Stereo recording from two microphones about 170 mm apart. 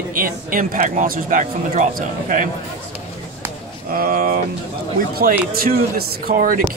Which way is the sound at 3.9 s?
60° right (ahead or behind).